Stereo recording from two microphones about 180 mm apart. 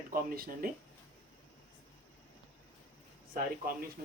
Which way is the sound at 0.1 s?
55° right (ahead or behind).